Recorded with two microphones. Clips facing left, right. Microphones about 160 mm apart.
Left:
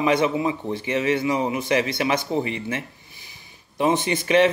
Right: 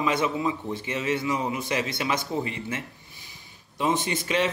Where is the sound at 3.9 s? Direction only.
70° left (ahead or behind).